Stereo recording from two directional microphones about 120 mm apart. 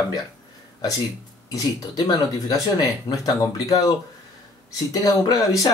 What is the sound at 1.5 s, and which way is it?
Speech, 30° left (ahead or behind).